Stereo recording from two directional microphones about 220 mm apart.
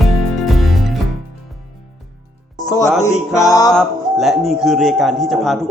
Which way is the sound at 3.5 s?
15° left (ahead or behind).